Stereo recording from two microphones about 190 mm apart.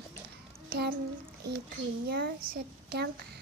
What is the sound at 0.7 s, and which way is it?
Speech, 60° right (ahead or behind).